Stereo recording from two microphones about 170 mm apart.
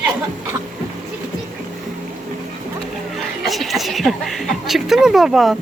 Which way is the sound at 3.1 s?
Centre (ahead or behind).